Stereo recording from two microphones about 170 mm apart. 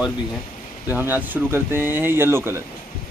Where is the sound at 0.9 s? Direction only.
10° right (ahead or behind).